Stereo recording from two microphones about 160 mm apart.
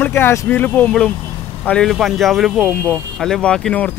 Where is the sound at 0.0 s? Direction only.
15° left (ahead or behind).